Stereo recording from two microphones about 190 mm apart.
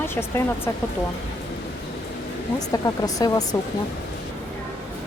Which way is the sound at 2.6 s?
20° left (ahead or behind).